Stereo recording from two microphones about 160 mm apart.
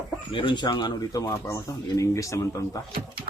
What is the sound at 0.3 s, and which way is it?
Speech, 30° left (ahead or behind).